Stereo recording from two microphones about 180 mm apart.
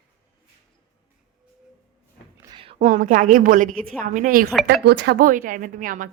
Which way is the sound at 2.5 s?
25° right (ahead or behind).